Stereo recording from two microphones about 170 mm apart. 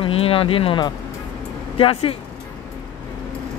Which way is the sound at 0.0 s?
35° left (ahead or behind).